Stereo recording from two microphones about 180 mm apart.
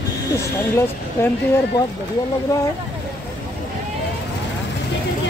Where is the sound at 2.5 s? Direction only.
20° left (ahead or behind).